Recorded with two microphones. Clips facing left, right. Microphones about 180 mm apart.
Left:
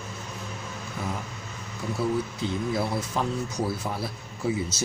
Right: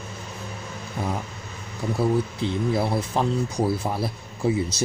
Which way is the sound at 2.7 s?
25° right (ahead or behind).